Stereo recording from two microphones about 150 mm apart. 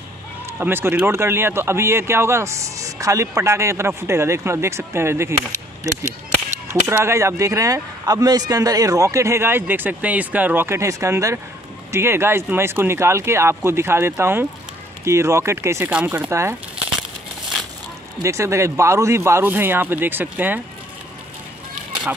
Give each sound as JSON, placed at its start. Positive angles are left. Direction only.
{"t": 0.5, "sound": "speech", "side_deg": -15}
{"t": 6.7, "sound": "speech", "side_deg": -20}
{"t": 18.2, "sound": "speech", "side_deg": -20}